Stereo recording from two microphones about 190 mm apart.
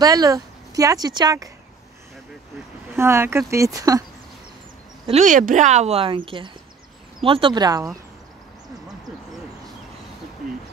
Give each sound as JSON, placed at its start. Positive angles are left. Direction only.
{"t": 0.0, "sound": "speech", "side_deg": -20}
{"t": 3.0, "sound": "speech", "side_deg": -15}
{"t": 5.0, "sound": "speech", "side_deg": -40}